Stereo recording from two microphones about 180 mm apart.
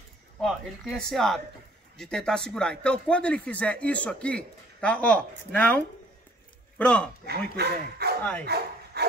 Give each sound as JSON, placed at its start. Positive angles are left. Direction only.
{"t": 0.4, "sound": "speech", "side_deg": 0}
{"t": 6.8, "sound": "speech", "side_deg": 5}
{"t": 7.2, "sound": "speech", "side_deg": -65}
{"t": 8.2, "sound": "speech", "side_deg": 10}
{"t": 9.0, "sound": "dog", "side_deg": -65}